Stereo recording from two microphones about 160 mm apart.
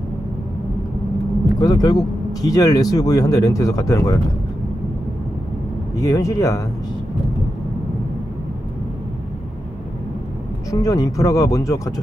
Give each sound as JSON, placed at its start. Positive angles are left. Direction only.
{"t": 1.6, "sound": "speech", "side_deg": 25}
{"t": 5.9, "sound": "speech", "side_deg": 20}
{"t": 10.7, "sound": "speech", "side_deg": 20}